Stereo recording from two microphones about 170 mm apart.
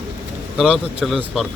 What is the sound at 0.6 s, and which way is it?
Speech, centre (ahead or behind).